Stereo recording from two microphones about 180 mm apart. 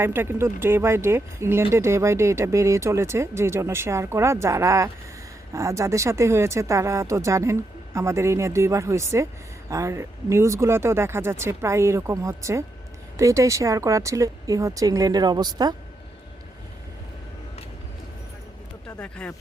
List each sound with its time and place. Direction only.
0.0 s speech: 15° right (ahead or behind)
18.9 s speech: 5° left (ahead or behind)